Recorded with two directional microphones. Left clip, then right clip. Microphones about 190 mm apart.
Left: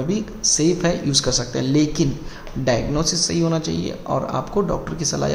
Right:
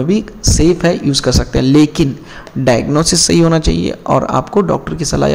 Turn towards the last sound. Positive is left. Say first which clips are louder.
# right 8 dB
turn(degrees=-30)  # may be behind; listen again after turning